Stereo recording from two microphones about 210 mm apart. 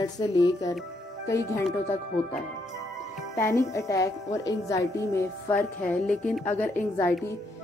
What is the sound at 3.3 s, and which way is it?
Speech, 15° left (ahead or behind).